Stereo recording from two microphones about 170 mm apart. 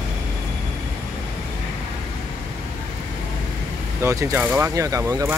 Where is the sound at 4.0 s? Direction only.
15° right (ahead or behind).